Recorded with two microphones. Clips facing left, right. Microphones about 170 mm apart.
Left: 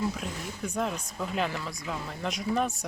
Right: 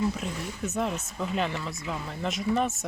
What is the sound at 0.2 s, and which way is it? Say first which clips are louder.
Speech: right 2 dB; 5° right (ahead or behind).